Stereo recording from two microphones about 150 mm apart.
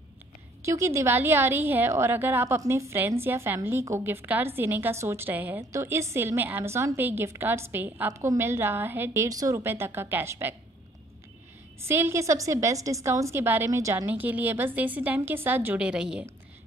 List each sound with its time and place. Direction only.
0.7 s a woman's voice: 20° right (ahead or behind)
11.8 s a woman's voice: 15° right (ahead or behind)